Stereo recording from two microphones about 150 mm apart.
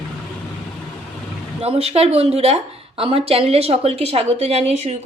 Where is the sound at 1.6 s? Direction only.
45° right (ahead or behind).